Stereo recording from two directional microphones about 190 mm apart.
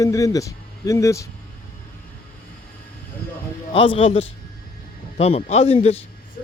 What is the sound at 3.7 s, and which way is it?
A man's voice, 30° left (ahead or behind).